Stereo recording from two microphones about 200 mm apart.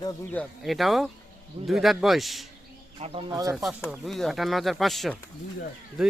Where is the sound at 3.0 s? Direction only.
30° right (ahead or behind).